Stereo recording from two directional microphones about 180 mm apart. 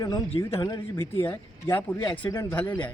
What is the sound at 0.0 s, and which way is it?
Speech, 25° left (ahead or behind).